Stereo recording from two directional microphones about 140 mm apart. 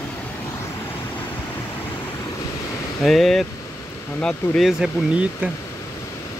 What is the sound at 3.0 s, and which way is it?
Speech, 5° left (ahead or behind).